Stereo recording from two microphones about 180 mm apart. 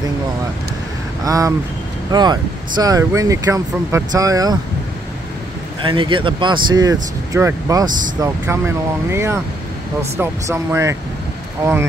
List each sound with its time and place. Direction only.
1.2 s speech: 20° right (ahead or behind)
5.9 s speech: 30° right (ahead or behind)